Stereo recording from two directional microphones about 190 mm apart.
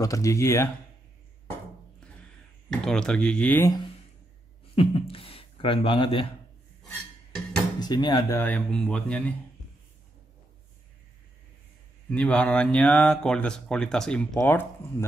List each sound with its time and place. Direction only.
0.0 s speech: 15° left (ahead or behind)
2.7 s speech: 5° left (ahead or behind)
4.7 s speech: 30° left (ahead or behind)
7.8 s speech: 20° left (ahead or behind)
8.4 s speech: 5° left (ahead or behind)
12.1 s speech: 5° left (ahead or behind)